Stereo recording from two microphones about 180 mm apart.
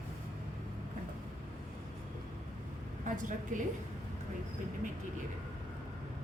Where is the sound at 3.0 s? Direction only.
45° right (ahead or behind).